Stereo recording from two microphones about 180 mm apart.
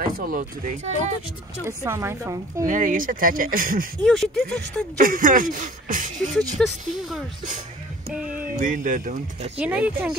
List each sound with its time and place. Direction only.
0.0 s speech: 50° right (ahead or behind)
1.7 s a woman's voice: 15° right (ahead or behind)
2.6 s speech: 45° right (ahead or behind)
4.0 s speech: centre (ahead or behind)
4.9 s speech: 50° right (ahead or behind)
6.6 s speech: centre (ahead or behind)
8.1 s a sound: 5° right (ahead or behind)
8.5 s speech: 45° right (ahead or behind)
9.6 s a woman's voice: 10° right (ahead or behind)